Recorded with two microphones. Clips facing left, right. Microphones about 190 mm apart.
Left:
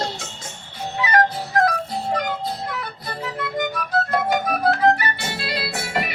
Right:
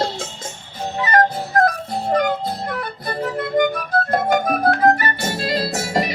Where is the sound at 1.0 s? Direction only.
45° right (ahead or behind).